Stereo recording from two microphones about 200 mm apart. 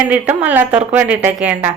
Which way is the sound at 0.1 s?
10° right (ahead or behind).